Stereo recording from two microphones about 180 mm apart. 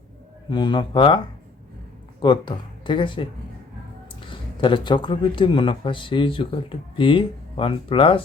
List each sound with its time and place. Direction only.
0.5 s speech: 25° left (ahead or behind)
2.2 s speech: 25° left (ahead or behind)
4.3 s speech: 25° left (ahead or behind)